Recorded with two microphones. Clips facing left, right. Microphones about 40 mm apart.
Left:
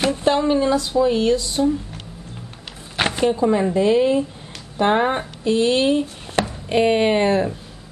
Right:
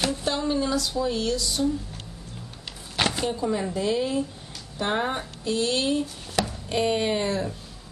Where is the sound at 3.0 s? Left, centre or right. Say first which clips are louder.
Left 7 dB; left.